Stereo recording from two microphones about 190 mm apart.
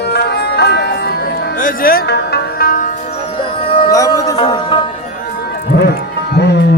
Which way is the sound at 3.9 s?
15° left (ahead or behind).